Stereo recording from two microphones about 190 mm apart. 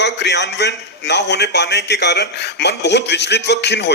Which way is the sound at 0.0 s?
65° left (ahead or behind).